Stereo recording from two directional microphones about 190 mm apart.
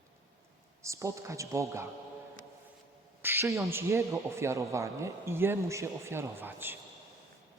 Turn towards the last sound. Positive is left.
turn(degrees=-10)  # may be behind; listen again after turning